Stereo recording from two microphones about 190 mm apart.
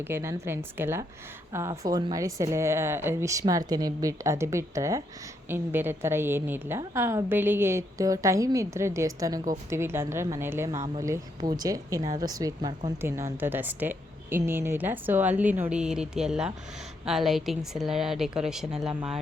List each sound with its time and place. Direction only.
0.1 s a woman's voice: 15° right (ahead or behind)